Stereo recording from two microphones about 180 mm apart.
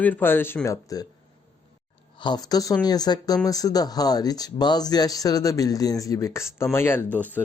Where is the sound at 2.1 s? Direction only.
25° left (ahead or behind).